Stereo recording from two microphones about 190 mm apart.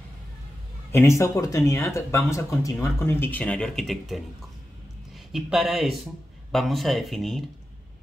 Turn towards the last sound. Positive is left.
turn(degrees=0)  # may be behind; listen again after turning